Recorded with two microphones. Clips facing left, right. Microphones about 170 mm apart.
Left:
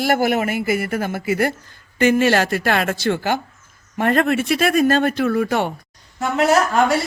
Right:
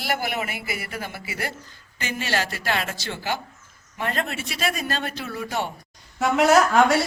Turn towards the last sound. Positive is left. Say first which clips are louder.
# left 1 dB
turn(degrees=0)  # may be behind; listen again after turning